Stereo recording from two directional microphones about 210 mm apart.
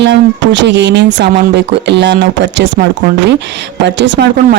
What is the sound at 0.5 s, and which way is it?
Speech, 55° right (ahead or behind).